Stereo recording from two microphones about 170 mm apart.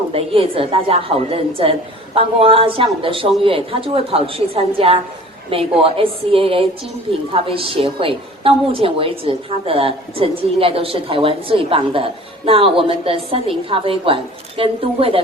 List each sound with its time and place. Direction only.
0.1 s a woman's voice: 35° right (ahead or behind)